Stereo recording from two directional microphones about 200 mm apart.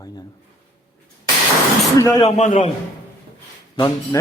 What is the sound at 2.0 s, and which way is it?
Speech, 15° left (ahead or behind).